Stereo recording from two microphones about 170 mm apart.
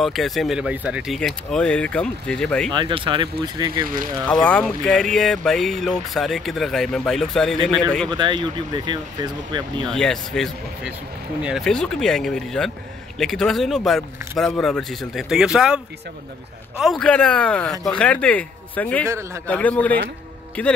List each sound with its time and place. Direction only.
0.0 s speech: centre (ahead or behind)
2.7 s speech: 30° right (ahead or behind)
4.5 s speech: 5° left (ahead or behind)
8.1 s speech: 25° right (ahead or behind)
9.8 s speech: 5° left (ahead or behind)
19.0 s a man's voice: 15° right (ahead or behind)
19.4 s speech: 10° left (ahead or behind)